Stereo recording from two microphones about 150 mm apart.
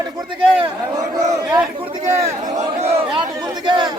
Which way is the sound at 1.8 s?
35° right (ahead or behind).